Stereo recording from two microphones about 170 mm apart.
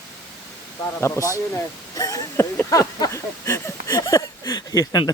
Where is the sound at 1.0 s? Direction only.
15° left (ahead or behind).